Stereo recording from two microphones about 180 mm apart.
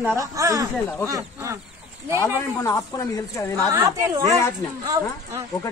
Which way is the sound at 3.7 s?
20° right (ahead or behind).